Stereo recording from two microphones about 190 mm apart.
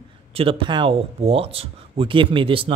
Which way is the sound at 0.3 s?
30° right (ahead or behind).